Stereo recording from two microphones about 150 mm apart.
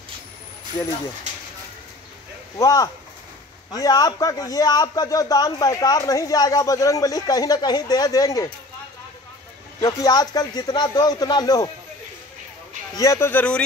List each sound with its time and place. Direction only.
2.6 s a man's voice: 25° left (ahead or behind)
9.8 s a man's voice: 25° left (ahead or behind)
12.9 s speech: 20° left (ahead or behind)